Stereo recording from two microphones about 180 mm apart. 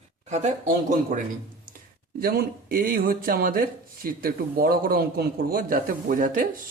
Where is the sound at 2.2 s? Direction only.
55° right (ahead or behind).